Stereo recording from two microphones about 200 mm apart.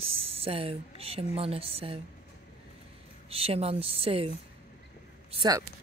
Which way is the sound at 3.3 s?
30° right (ahead or behind).